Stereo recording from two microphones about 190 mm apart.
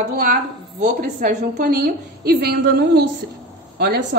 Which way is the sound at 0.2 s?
45° right (ahead or behind).